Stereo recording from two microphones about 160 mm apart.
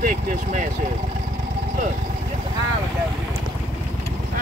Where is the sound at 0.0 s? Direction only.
55° right (ahead or behind).